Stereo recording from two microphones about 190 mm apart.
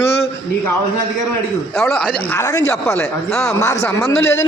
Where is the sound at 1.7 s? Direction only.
5° left (ahead or behind).